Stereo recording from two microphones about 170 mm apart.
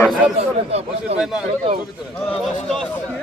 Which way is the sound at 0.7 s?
35° right (ahead or behind).